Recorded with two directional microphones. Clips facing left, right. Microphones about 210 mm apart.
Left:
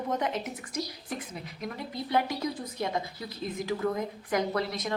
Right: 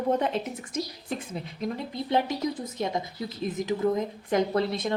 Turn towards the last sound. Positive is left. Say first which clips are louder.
# right 4 dB
turn(degrees=-30)  # may be behind; listen again after turning